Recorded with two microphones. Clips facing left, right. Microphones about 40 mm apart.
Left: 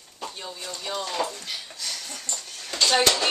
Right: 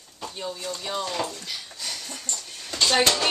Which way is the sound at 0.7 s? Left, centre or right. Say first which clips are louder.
Left 2 dB; centre.